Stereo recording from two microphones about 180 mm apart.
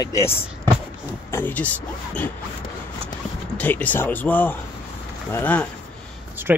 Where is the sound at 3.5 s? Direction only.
10° left (ahead or behind).